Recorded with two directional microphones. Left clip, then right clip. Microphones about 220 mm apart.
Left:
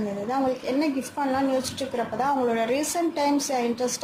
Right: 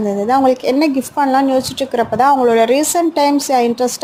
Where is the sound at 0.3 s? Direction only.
35° right (ahead or behind).